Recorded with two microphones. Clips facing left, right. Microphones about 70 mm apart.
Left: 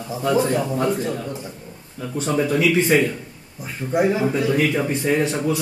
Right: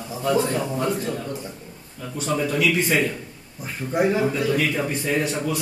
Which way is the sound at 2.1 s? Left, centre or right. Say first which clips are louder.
Left 3 dB; left.